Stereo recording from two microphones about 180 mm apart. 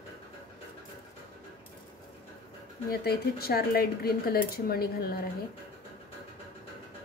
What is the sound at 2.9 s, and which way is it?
Speech, 60° left (ahead or behind).